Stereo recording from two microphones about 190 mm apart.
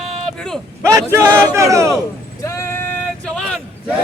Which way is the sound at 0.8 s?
15° right (ahead or behind).